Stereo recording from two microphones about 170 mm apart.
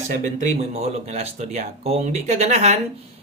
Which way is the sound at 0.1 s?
45° right (ahead or behind).